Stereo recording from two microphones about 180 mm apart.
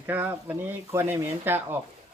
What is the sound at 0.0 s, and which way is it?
Speech, 10° right (ahead or behind).